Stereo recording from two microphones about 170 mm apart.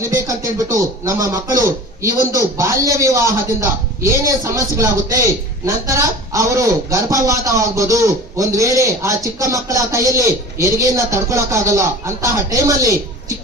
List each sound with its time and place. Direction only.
0.0 s a man's voice: 20° right (ahead or behind)